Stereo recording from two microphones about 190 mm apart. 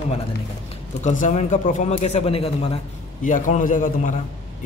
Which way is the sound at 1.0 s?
40° left (ahead or behind).